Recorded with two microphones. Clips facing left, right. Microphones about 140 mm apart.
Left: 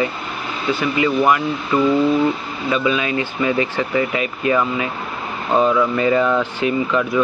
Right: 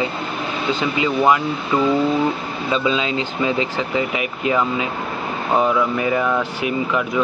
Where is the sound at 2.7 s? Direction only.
20° right (ahead or behind).